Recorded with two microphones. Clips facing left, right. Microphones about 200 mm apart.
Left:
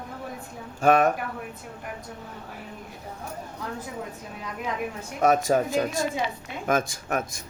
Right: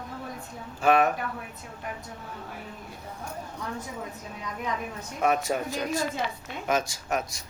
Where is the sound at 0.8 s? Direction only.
45° left (ahead or behind).